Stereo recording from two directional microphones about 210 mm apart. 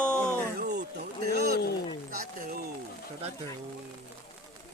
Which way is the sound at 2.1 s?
45° right (ahead or behind).